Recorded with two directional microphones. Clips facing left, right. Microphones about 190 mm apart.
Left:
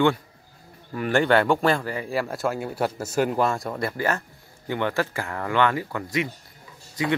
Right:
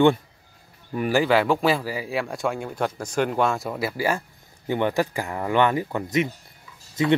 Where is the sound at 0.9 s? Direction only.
10° right (ahead or behind).